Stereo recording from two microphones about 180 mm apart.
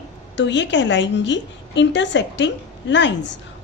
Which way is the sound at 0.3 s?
80° left.